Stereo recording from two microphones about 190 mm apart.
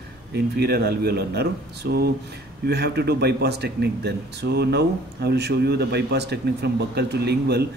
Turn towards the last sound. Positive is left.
turn(degrees=-60)  # may be behind; listen again after turning